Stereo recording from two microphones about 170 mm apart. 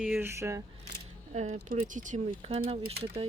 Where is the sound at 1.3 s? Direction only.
45° right (ahead or behind).